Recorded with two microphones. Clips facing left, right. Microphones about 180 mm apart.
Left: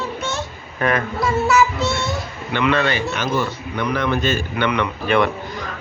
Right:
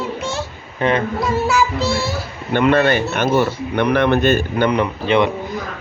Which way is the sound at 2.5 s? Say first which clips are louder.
Right 5 dB; 50° right (ahead or behind).